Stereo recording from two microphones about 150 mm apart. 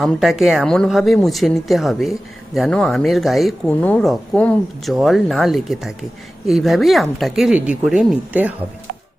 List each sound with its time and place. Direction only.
0.0 s speech: centre (ahead or behind)
3.7 s speech: 10° left (ahead or behind); by 8.5 s 10° right (ahead or behind)